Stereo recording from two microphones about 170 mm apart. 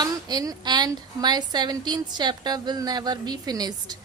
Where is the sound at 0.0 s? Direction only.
25° right (ahead or behind).